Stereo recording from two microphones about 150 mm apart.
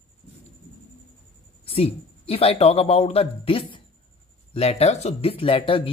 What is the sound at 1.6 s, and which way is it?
Speech, 40° left (ahead or behind).